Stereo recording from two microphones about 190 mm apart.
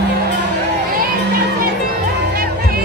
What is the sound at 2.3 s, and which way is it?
Music, 50° right (ahead or behind).